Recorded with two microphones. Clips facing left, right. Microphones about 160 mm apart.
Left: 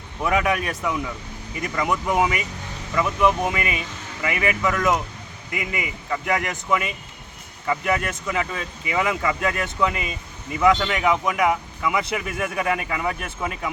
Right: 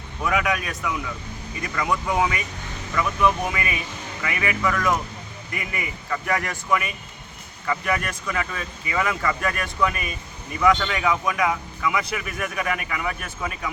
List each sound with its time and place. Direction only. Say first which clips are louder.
0.2 s speech: left 2 dB; 25° left (ahead or behind)